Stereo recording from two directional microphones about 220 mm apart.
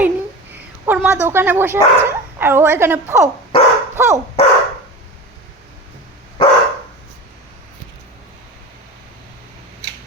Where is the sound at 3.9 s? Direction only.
10° right (ahead or behind).